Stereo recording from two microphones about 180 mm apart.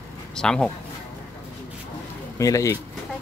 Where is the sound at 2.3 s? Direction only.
15° left (ahead or behind).